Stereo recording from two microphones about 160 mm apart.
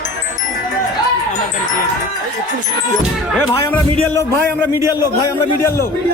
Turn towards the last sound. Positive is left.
turn(degrees=15)  # may be behind; listen again after turning